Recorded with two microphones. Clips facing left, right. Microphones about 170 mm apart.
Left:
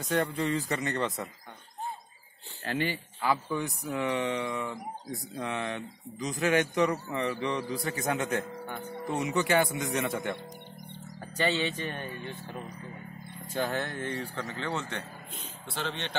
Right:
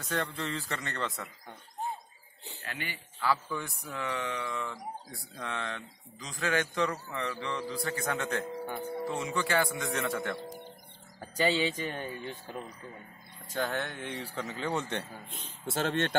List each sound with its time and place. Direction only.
0.1 s a man's voice: 15° left (ahead or behind)
2.6 s speech: 30° left (ahead or behind)
3.2 s speech: 20° left (ahead or behind)
8.6 s speech: 10° right (ahead or behind)
9.1 s speech: 20° left (ahead or behind)
11.3 s speech: 10° right (ahead or behind)
13.5 s speech: 10° left (ahead or behind); by 15.0 s 15° right (ahead or behind)
15.7 s speech: 45° right (ahead or behind)